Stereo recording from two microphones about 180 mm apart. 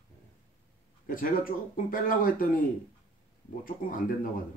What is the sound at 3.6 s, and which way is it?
Speech, 50° left (ahead or behind).